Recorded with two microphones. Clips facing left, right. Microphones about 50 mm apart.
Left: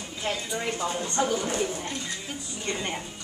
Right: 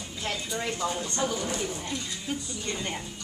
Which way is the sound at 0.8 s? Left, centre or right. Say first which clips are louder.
Left 3 dB; left.